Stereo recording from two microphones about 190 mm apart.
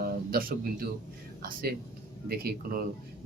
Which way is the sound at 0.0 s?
50° right (ahead or behind).